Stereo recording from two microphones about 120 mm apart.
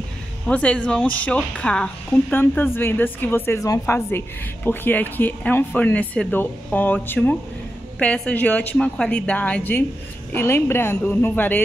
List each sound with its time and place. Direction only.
0.5 s speech: 10° left (ahead or behind)